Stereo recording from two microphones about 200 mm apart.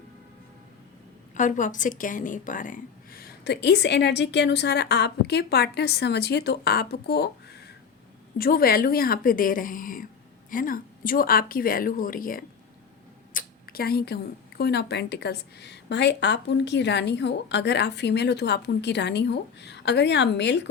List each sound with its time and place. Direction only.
1.3 s a woman's voice: 40° left (ahead or behind)
13.3 s a sound: 50° left (ahead or behind)
14.6 s a woman's voice: 55° left (ahead or behind)